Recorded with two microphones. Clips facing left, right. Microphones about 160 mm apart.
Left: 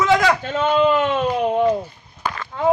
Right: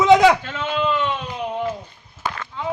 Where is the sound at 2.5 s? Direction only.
55° left (ahead or behind).